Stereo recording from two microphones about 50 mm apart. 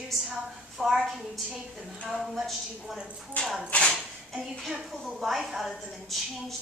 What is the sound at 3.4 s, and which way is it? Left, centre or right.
Speech, centre.